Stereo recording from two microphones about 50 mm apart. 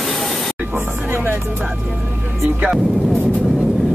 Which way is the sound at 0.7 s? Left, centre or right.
Right.